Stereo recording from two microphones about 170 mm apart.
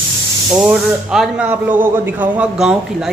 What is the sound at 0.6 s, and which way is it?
A woman's voice, 5° right (ahead or behind).